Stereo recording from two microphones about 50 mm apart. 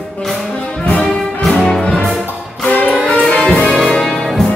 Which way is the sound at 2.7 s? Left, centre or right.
Left.